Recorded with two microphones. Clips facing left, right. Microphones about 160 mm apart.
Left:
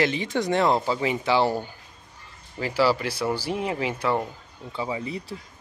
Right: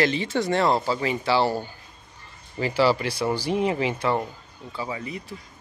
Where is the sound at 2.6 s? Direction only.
5° left (ahead or behind).